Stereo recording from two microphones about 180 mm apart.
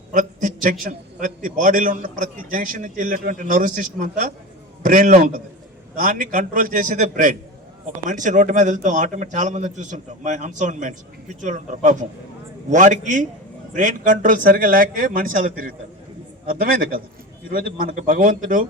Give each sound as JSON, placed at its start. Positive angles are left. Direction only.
{"t": 0.1, "sound": "a man's voice", "side_deg": -45}